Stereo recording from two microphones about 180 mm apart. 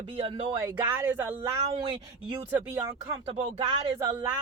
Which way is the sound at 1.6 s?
30° right (ahead or behind).